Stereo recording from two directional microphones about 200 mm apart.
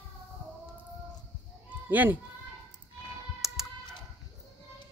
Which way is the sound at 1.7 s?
10° right (ahead or behind).